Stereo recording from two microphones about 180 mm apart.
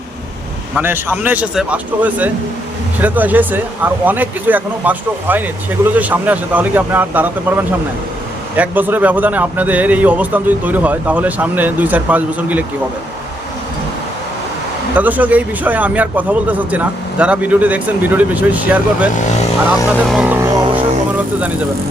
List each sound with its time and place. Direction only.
0.8 s a man's voice: 10° right (ahead or behind)
14.9 s a man's voice: 10° right (ahead or behind)
19.1 s speech: 45° left (ahead or behind)
20.1 s a man's voice: 5° right (ahead or behind)